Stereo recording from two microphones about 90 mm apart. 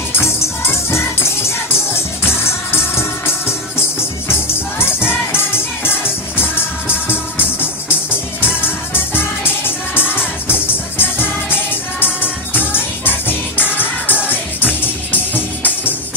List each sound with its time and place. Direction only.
0.1 s music: 30° left (ahead or behind)